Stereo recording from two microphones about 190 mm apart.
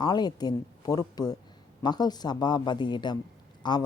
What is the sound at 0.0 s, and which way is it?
Speech, 20° left (ahead or behind).